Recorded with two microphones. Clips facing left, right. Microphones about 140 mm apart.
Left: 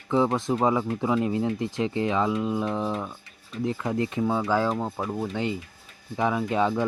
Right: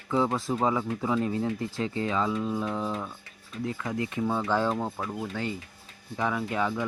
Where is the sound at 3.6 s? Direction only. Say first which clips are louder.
Left 5 dB; 25° left (ahead or behind); by 5.1 s 5° left (ahead or behind).